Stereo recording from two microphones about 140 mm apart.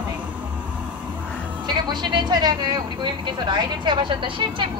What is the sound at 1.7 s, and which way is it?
Speech, 30° right (ahead or behind).